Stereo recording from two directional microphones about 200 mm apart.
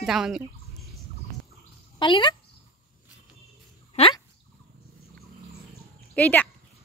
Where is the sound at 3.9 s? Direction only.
30° left (ahead or behind).